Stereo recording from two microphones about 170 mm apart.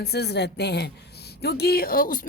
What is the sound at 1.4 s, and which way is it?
Speech, 70° left (ahead or behind).